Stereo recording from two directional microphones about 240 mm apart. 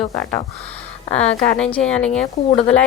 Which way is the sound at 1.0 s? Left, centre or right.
Left.